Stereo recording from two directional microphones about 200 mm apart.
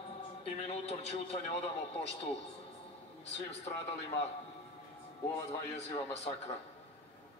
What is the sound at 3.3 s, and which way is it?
A man's voice, 35° left (ahead or behind).